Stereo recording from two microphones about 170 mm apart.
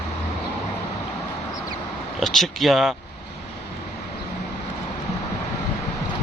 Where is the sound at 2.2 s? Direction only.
Centre (ahead or behind).